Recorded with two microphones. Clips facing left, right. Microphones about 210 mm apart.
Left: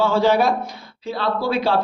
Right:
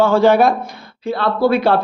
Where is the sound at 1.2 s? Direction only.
55° right (ahead or behind).